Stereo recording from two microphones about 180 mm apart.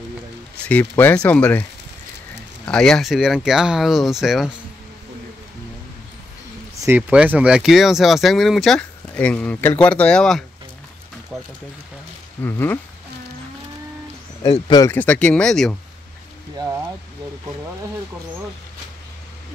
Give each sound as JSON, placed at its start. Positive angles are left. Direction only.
{"t": 0.7, "sound": "speech", "side_deg": 10}
{"t": 2.7, "sound": "speech", "side_deg": 5}
{"t": 6.8, "sound": "speech", "side_deg": -10}
{"t": 12.4, "sound": "speech", "side_deg": 15}
{"t": 14.9, "sound": "speech", "side_deg": 10}
{"t": 16.5, "sound": "a sound", "side_deg": -15}